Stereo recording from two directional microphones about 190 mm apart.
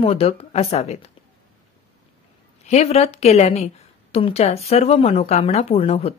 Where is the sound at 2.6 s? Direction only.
35° left (ahead or behind).